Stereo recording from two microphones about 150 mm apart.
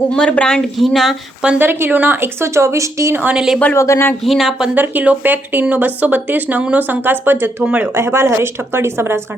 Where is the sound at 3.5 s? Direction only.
15° left (ahead or behind).